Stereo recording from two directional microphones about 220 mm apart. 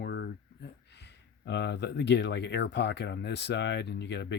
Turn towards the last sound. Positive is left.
turn(degrees=50)  # may be behind; listen again after turning